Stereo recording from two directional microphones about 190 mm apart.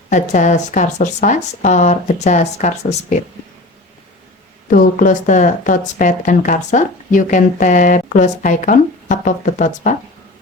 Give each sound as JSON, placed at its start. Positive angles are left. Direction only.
{"t": 0.1, "sound": "speech", "side_deg": 40}
{"t": 4.7, "sound": "speech", "side_deg": 45}